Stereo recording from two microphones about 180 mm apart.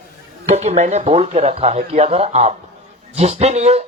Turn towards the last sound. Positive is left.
turn(degrees=-35)  # may be behind; listen again after turning